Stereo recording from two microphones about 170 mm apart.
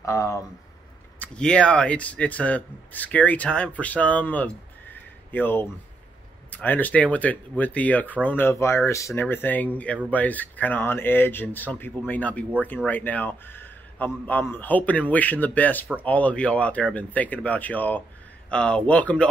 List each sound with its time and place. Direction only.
0.0 s speech: 20° left (ahead or behind)
1.2 s speech: 5° left (ahead or behind)